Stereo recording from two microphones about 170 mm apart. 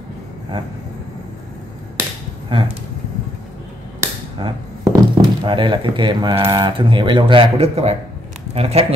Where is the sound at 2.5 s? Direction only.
30° right (ahead or behind).